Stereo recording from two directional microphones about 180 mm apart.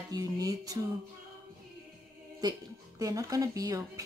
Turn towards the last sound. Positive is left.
turn(degrees=-20)  # may be behind; listen again after turning